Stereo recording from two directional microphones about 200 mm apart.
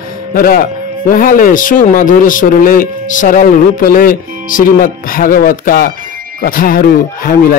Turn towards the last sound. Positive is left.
turn(degrees=45)  # may be behind; listen again after turning